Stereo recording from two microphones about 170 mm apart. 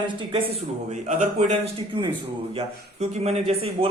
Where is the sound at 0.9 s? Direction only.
45° right (ahead or behind).